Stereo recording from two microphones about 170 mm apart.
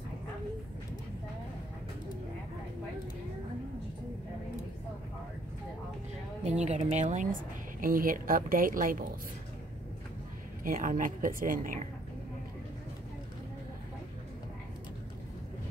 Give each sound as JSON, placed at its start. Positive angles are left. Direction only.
{"t": 6.6, "sound": "speech", "side_deg": -40}
{"t": 10.6, "sound": "speech", "side_deg": -50}